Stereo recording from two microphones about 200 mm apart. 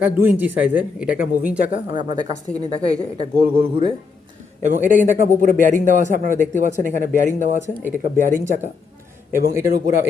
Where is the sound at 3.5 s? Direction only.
25° right (ahead or behind).